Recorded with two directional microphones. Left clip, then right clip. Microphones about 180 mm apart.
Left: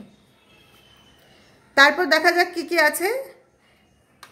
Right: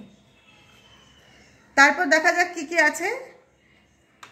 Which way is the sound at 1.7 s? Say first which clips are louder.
Left 1 dB; 40° left (ahead or behind).